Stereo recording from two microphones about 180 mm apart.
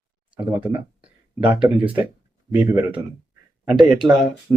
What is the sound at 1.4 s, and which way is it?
Speech, 5° right (ahead or behind).